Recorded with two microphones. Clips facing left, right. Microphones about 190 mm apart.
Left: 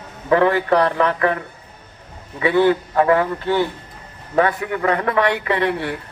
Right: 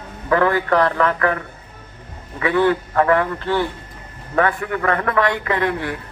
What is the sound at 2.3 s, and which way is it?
A man's voice, 20° left (ahead or behind).